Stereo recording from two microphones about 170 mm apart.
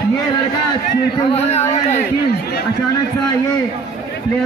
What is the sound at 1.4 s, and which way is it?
Speech, 40° left (ahead or behind).